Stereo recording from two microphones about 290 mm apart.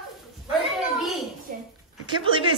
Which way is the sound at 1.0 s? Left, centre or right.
Centre.